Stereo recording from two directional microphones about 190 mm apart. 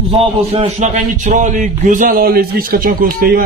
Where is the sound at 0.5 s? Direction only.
35° right (ahead or behind).